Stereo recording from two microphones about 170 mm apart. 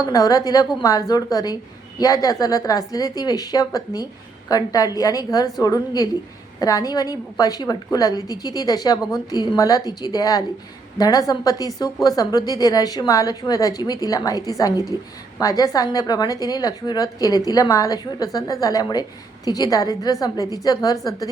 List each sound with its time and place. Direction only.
0.0 s a woman's voice: 20° left (ahead or behind)